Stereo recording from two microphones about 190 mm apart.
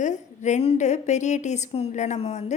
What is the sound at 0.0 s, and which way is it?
A woman's voice, 40° left (ahead or behind).